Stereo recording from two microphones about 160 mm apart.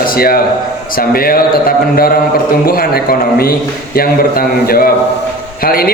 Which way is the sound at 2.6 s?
65° left (ahead or behind).